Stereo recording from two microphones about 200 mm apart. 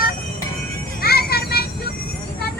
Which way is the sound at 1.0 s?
50° left (ahead or behind).